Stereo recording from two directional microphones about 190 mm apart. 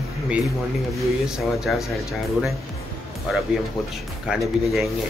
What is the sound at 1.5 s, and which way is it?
Speech, centre (ahead or behind).